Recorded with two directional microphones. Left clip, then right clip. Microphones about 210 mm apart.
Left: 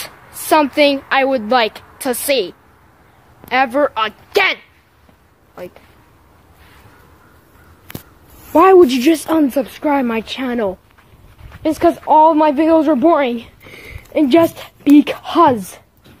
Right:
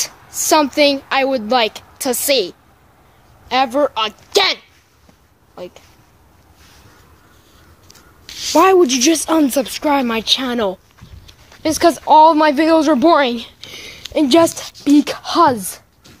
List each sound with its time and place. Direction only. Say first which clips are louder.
0.0 s a woman's voice: right 8 dB; 15° right (ahead or behind)
8.5 s speech: left 2 dB; 5° left (ahead or behind)
9.3 s a woman's voice: even; 15° right (ahead or behind)
14.8 s speech: left 3 dB; centre (ahead or behind)